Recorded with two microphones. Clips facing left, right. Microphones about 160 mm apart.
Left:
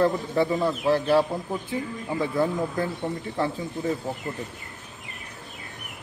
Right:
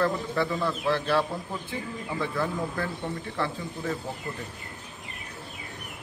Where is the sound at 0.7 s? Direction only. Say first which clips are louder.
Left 4 dB; 40° left (ahead or behind).